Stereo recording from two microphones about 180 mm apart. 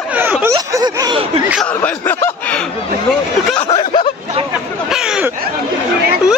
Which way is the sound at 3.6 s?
30° left (ahead or behind).